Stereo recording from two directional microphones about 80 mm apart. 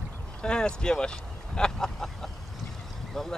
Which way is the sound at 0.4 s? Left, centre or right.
Centre.